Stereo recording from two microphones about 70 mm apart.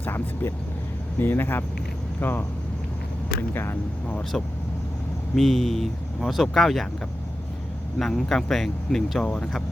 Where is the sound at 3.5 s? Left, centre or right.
Left.